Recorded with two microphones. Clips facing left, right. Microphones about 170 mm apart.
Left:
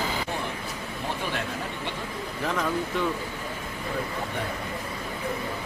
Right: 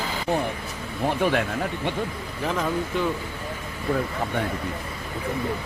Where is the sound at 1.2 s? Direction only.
55° right (ahead or behind).